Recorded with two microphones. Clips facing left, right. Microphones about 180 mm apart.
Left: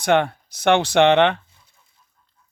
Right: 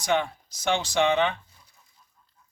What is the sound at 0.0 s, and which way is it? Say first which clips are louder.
Speech: left 7 dB; 65° left (ahead or behind).